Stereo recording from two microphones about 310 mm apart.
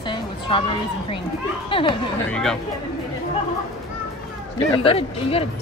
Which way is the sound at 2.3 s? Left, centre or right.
Centre.